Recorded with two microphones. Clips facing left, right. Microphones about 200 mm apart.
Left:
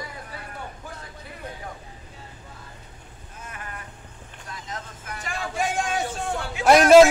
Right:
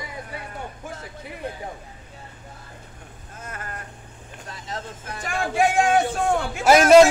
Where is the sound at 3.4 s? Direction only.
45° right (ahead or behind).